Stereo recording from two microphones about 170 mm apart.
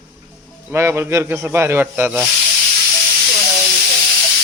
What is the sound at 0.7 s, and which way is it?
Speech, 15° right (ahead or behind).